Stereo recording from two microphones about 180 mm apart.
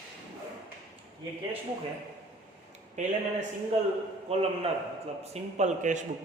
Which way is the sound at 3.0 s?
40° right (ahead or behind).